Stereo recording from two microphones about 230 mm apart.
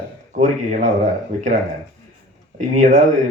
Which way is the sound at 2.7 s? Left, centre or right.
Right.